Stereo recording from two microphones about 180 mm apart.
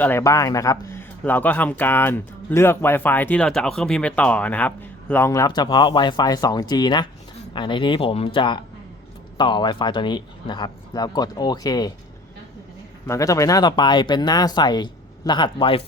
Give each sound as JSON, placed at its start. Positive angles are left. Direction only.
{"t": 0.0, "sound": "speech", "side_deg": 15}
{"t": 13.1, "sound": "speech", "side_deg": 20}